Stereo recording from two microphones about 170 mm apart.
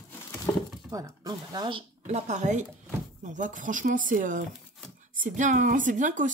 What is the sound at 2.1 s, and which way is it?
Speech, 40° right (ahead or behind).